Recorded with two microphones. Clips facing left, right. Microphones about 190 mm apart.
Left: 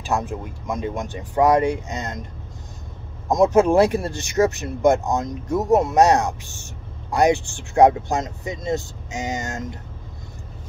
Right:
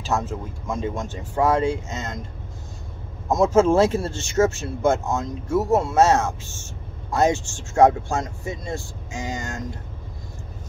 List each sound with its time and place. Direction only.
0.0 s speech: 15° left (ahead or behind)
3.3 s speech: 15° left (ahead or behind)